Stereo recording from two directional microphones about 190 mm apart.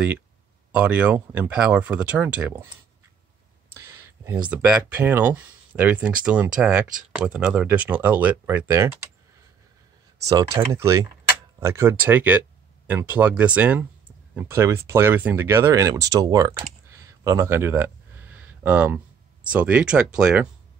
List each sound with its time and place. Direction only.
0.7 s speech: 5° right (ahead or behind)
3.7 s a sound: 15° right (ahead or behind)
4.5 s speech: 5° right (ahead or behind)
10.2 s speech: 20° right (ahead or behind)